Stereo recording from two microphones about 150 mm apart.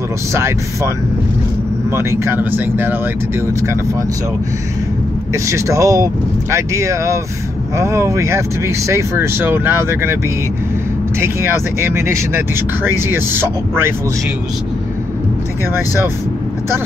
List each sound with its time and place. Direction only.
0.3 s speech: 20° right (ahead or behind)
5.3 s speech: 20° right (ahead or behind)
11.1 s speech: 15° right (ahead or behind)